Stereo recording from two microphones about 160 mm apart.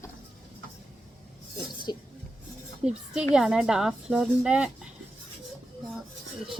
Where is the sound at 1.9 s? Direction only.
25° left (ahead or behind).